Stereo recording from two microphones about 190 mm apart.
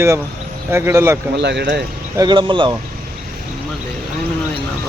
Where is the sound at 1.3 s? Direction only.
65° right (ahead or behind).